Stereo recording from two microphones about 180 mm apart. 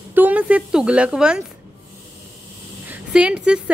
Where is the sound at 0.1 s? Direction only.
10° right (ahead or behind).